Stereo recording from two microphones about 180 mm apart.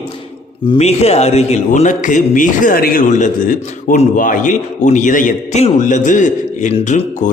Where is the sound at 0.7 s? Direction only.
35° left (ahead or behind).